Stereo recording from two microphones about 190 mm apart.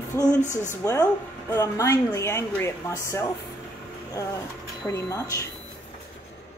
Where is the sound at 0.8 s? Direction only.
15° left (ahead or behind).